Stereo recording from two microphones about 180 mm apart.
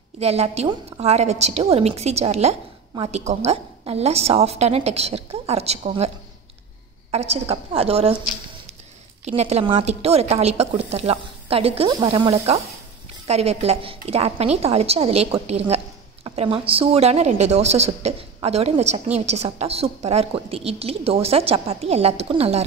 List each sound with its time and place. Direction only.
0.2 s a woman's voice: 35° right (ahead or behind)
9.2 s a woman's voice: 35° right (ahead or behind)
16.3 s a woman's voice: 30° right (ahead or behind)